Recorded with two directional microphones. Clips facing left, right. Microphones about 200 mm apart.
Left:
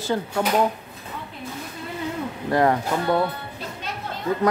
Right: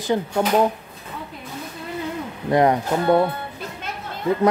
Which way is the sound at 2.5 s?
20° right (ahead or behind).